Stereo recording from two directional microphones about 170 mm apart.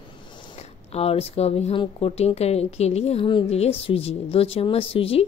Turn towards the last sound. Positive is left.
turn(degrees=35)  # may be behind; listen again after turning